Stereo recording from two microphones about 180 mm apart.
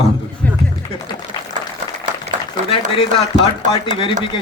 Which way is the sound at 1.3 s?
30° left (ahead or behind).